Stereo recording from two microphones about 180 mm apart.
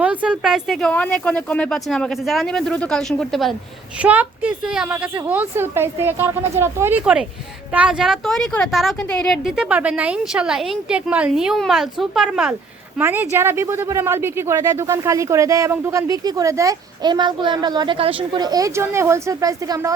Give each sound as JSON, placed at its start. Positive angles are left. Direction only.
{"t": 0.0, "sound": "speech", "side_deg": -5}
{"t": 4.0, "sound": "speech", "side_deg": -10}